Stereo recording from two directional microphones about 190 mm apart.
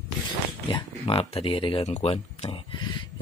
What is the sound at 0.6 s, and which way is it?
Speech, 30° left (ahead or behind).